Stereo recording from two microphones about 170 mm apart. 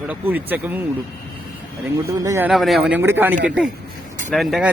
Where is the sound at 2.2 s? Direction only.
15° right (ahead or behind).